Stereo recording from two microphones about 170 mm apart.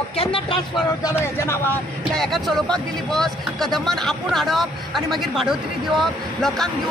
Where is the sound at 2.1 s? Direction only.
Centre (ahead or behind).